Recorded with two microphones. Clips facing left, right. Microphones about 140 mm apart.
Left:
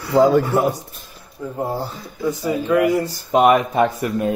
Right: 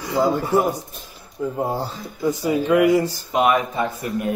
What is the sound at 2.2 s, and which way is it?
Speech, 15° right (ahead or behind).